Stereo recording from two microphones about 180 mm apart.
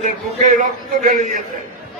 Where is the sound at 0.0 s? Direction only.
50° right (ahead or behind).